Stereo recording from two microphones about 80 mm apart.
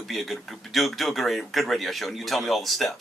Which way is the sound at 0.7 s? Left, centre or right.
Centre.